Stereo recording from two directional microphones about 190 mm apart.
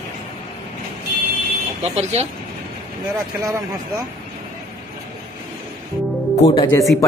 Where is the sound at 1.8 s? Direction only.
35° right (ahead or behind).